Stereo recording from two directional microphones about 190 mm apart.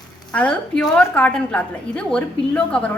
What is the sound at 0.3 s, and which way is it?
A woman's voice, 5° left (ahead or behind).